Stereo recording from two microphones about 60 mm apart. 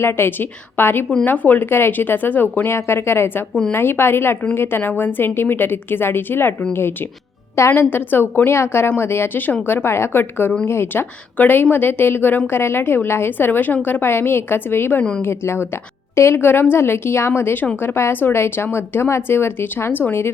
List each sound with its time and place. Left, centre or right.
0.0 s speech: left
2.7 s speech: left
7.8 s speech: left
11.3 s speech: left